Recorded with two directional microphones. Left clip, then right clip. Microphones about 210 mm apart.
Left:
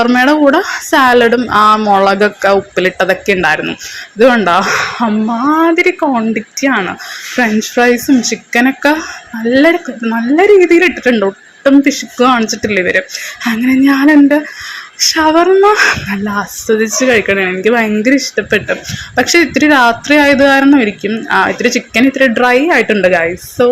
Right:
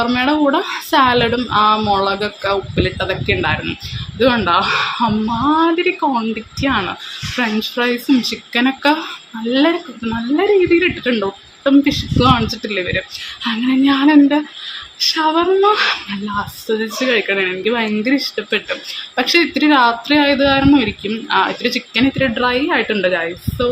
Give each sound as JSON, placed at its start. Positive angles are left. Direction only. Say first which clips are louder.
{"t": 0.0, "sound": "speech", "louder": "left 7 dB", "side_deg": 25}